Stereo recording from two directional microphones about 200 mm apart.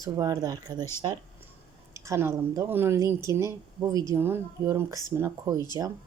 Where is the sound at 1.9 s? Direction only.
15° right (ahead or behind).